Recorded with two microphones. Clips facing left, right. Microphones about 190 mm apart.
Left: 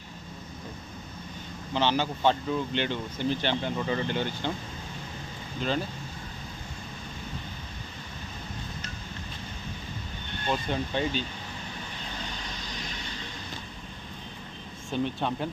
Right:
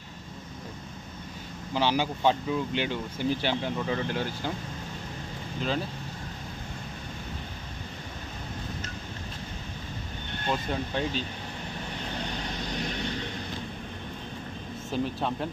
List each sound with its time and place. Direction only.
1.7 s speech: 10° right (ahead or behind)
5.5 s speech: centre (ahead or behind)
10.5 s speech: centre (ahead or behind)
12.7 s vehicle: 60° right (ahead or behind)
14.9 s speech: centre (ahead or behind)